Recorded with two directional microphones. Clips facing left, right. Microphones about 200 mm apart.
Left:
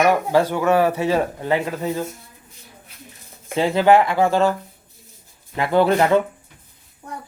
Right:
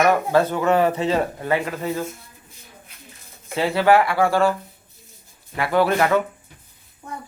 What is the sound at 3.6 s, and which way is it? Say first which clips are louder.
Speech: left 2 dB; 20° left (ahead or behind).